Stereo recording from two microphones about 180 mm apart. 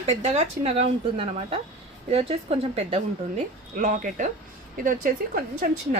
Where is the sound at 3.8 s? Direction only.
45° right (ahead or behind).